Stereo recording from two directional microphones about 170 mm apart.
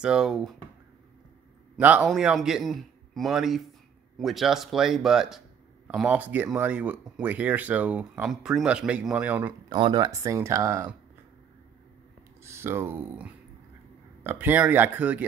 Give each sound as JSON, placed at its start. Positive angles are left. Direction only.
{"t": 0.0, "sound": "speech", "side_deg": -5}
{"t": 1.8, "sound": "speech", "side_deg": -10}
{"t": 9.7, "sound": "speech", "side_deg": -30}
{"t": 12.4, "sound": "speech", "side_deg": -15}